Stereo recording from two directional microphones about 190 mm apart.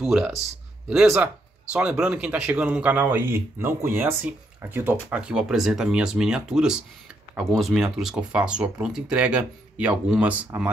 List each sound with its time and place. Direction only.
0.0 s speech: 5° right (ahead or behind)